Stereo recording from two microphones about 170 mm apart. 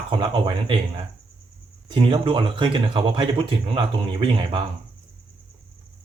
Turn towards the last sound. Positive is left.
turn(degrees=-30)  # may be behind; listen again after turning